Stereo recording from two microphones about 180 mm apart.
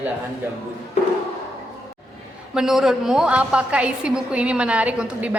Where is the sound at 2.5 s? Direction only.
Centre (ahead or behind).